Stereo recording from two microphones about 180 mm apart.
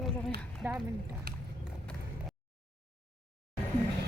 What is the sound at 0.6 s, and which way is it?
Speech, 10° right (ahead or behind).